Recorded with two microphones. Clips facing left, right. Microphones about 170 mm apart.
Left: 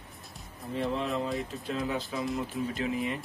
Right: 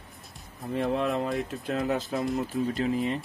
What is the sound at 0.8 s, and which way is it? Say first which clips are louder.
Speech: right 3 dB; 50° right (ahead or behind).